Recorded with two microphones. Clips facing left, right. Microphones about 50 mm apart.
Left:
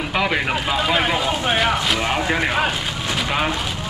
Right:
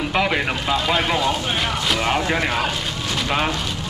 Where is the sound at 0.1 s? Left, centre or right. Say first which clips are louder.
Left 1 dB; centre.